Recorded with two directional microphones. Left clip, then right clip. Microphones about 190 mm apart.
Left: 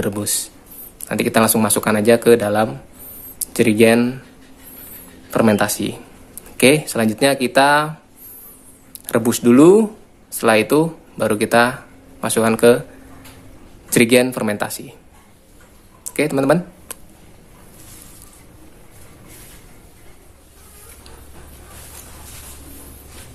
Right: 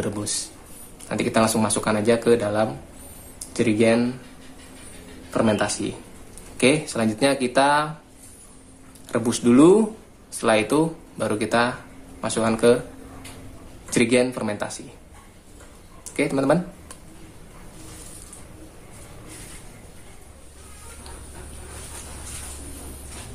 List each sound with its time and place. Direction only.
0.0 s speech: 40° left (ahead or behind)
5.3 s speech: 50° left (ahead or behind)
9.0 s speech: 40° left (ahead or behind)
13.8 s speech: 40° left (ahead or behind)
16.1 s speech: 40° left (ahead or behind)